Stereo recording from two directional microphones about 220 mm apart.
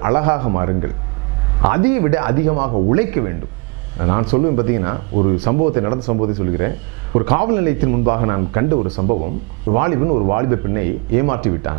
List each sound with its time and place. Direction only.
0.0 s speech: 15° right (ahead or behind)
2.5 s speech: 30° right (ahead or behind)
2.9 s speech: 15° right (ahead or behind)
9.8 s speech: 20° right (ahead or behind)